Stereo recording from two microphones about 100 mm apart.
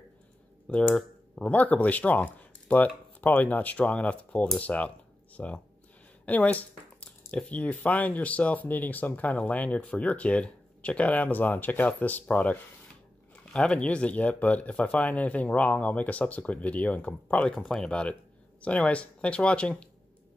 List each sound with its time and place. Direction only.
0.7 s speech: 10° left (ahead or behind)
1.5 s speech: 15° left (ahead or behind)